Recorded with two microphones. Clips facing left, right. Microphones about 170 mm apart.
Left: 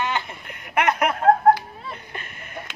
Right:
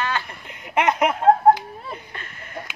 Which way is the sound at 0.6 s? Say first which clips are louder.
Right 1 dB; 20° right (ahead or behind).